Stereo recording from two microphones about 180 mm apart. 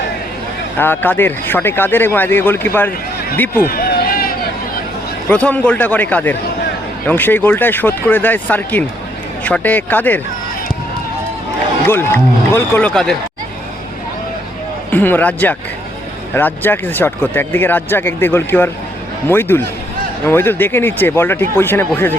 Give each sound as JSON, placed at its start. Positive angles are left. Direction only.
{"t": 0.8, "sound": "speech", "side_deg": 10}
{"t": 3.6, "sound": "run", "side_deg": 55}
{"t": 5.3, "sound": "speech", "side_deg": 5}
{"t": 11.9, "sound": "speech", "side_deg": 10}
{"t": 14.8, "sound": "speech", "side_deg": 10}